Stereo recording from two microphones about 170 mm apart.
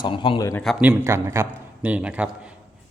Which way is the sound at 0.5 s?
Centre (ahead or behind).